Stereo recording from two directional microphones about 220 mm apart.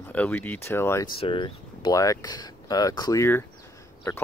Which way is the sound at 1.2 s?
25° left (ahead or behind).